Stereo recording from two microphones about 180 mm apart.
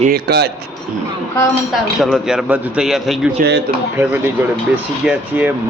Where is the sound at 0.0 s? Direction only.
60° right (ahead or behind).